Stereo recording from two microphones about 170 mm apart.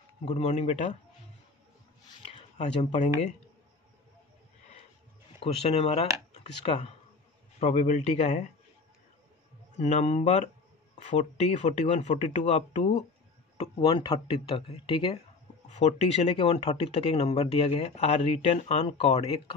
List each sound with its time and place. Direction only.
0.2 s speech: 35° left (ahead or behind)
2.2 s a sound: 40° left (ahead or behind)
5.4 s speech: 35° left (ahead or behind)
9.8 s speech: 40° left (ahead or behind)
13.6 s speech: 30° left (ahead or behind)